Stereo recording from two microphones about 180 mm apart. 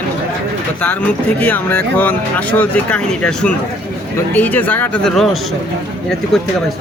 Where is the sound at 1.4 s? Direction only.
10° left (ahead or behind).